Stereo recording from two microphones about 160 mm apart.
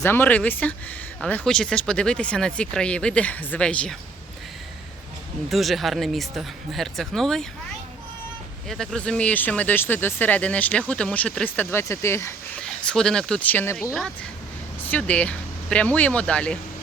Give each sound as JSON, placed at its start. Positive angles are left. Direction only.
{"t": 0.0, "sound": "speech", "side_deg": 15}
{"t": 5.5, "sound": "speech", "side_deg": 0}
{"t": 8.6, "sound": "speech", "side_deg": 0}
{"t": 12.6, "sound": "speech", "side_deg": 5}